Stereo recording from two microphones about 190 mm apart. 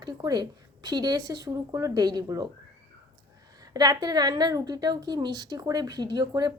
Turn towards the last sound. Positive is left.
turn(degrees=-20)  # may be behind; listen again after turning